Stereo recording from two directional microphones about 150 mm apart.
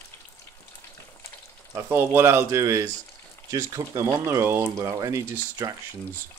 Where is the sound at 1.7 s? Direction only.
15° right (ahead or behind).